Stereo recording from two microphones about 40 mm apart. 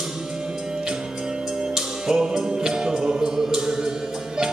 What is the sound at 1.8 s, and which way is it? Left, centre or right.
Music, centre.